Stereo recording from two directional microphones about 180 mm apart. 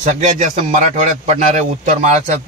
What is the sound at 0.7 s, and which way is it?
Speech, 40° right (ahead or behind).